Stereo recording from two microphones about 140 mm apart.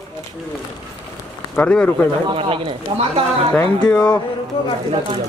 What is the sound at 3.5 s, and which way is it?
Speech, 10° left (ahead or behind).